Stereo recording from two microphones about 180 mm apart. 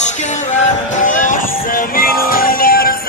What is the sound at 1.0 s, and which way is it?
Music, 45° left (ahead or behind).